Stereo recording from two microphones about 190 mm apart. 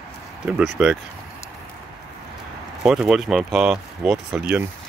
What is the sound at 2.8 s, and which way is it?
Speech, 5° right (ahead or behind).